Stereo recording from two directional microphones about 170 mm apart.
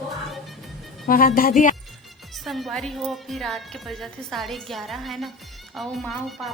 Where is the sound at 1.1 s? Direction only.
55° left (ahead or behind).